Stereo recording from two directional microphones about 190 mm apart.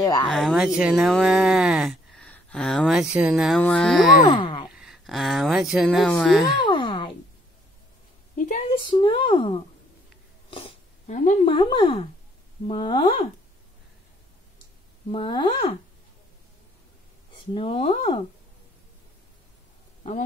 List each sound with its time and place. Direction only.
0.0 s speech: 20° left (ahead or behind)
0.3 s speech: centre (ahead or behind)
4.3 s a sound: 25° left (ahead or behind)
4.6 s speech: 5° right (ahead or behind)
6.6 s a sound: 25° left (ahead or behind)
8.4 s a sound: 40° left (ahead or behind)
8.8 s speech: 25° left (ahead or behind)
10.5 s a sound: 35° left (ahead or behind)
11.4 s speech: 25° left (ahead or behind)
15.0 s speech: 25° left (ahead or behind)
17.6 s speech: 30° left (ahead or behind)
20.0 s speech: 35° left (ahead or behind)